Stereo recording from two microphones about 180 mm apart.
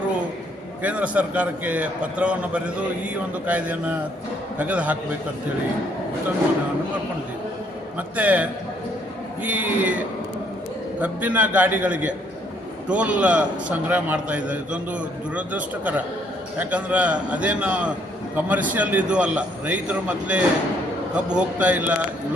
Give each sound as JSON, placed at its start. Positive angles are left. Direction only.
{"t": 0.8, "sound": "a man's voice", "side_deg": -10}
{"t": 7.9, "sound": "a man's voice", "side_deg": -10}